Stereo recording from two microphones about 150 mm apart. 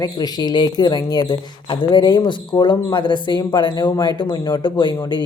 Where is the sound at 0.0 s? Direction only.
25° left (ahead or behind).